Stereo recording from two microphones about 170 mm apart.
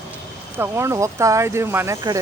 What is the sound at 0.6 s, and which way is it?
Speech, 15° right (ahead or behind).